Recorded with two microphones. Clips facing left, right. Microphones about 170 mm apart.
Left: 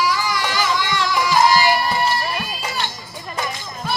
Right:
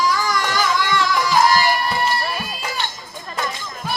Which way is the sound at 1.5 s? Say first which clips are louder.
Left 1 dB; 50° right (ahead or behind).